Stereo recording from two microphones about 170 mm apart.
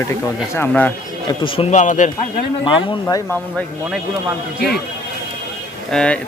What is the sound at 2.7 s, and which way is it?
Speech, 30° left (ahead or behind).